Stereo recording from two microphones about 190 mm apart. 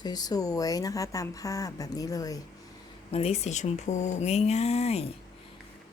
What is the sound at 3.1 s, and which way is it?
Speech, 30° left (ahead or behind).